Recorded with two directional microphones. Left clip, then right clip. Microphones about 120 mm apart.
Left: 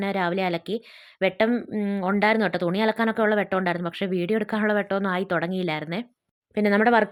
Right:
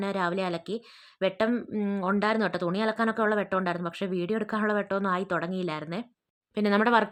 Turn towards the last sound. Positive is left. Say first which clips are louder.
# left 4 dB
turn(degrees=20)  # may be behind; listen again after turning